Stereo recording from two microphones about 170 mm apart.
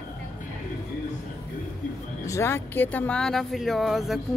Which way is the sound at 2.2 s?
15° left (ahead or behind).